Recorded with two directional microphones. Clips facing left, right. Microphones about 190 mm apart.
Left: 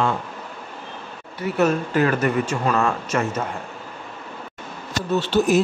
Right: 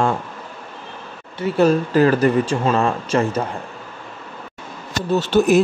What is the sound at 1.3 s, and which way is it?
Speech, 30° right (ahead or behind).